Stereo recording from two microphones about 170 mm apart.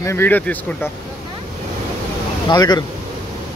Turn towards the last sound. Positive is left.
turn(degrees=25)  # may be behind; listen again after turning